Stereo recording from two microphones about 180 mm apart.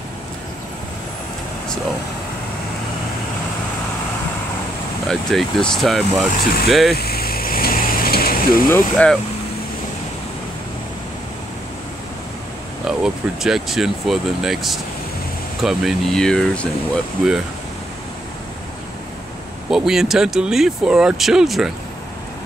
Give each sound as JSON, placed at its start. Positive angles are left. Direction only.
{"t": 5.0, "sound": "speech", "side_deg": 5}
{"t": 7.0, "sound": "vehicle", "side_deg": 60}
{"t": 8.9, "sound": "speech", "side_deg": 5}
{"t": 12.8, "sound": "speech", "side_deg": -5}
{"t": 19.7, "sound": "speech", "side_deg": -5}